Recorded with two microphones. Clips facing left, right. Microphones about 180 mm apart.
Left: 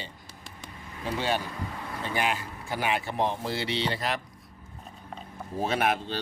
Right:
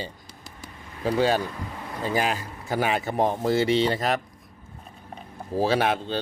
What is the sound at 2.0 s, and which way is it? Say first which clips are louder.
Speech: right 4 dB; 40° right (ahead or behind).